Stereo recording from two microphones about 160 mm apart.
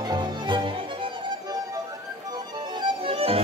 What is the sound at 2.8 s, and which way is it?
Music, 35° right (ahead or behind).